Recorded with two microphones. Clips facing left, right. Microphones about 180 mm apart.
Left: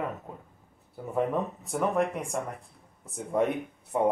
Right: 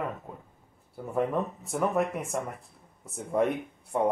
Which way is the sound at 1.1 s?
Centre (ahead or behind).